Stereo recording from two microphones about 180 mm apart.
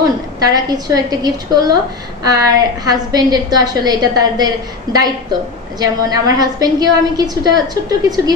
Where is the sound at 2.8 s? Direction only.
20° right (ahead or behind).